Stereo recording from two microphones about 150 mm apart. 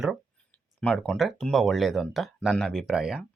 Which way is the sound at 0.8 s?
5° left (ahead or behind).